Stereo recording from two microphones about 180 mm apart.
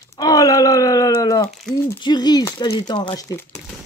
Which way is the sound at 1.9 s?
25° left (ahead or behind).